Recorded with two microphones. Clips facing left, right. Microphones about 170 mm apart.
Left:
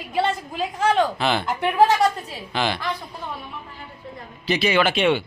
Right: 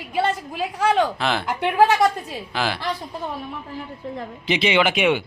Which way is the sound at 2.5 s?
5° right (ahead or behind).